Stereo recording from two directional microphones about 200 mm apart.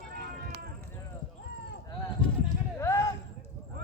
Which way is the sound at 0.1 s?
50° right (ahead or behind).